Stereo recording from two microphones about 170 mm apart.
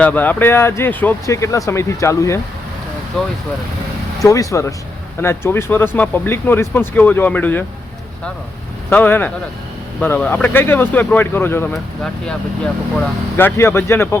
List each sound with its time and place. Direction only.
0.0 s speech: 10° left (ahead or behind)
4.2 s speech: 20° left (ahead or behind)
8.9 s speech: 10° left (ahead or behind)